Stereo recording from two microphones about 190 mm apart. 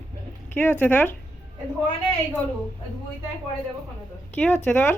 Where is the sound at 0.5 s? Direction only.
10° left (ahead or behind).